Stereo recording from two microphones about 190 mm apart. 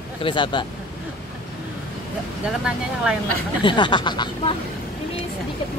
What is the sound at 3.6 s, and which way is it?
Speech, 25° left (ahead or behind).